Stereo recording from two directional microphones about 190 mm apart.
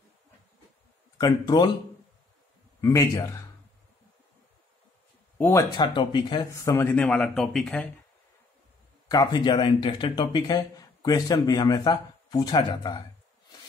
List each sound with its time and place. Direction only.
1.1 s speech: 20° left (ahead or behind)
2.8 s speech: 15° left (ahead or behind)
5.4 s speech: 15° left (ahead or behind)
9.1 s speech: 20° left (ahead or behind)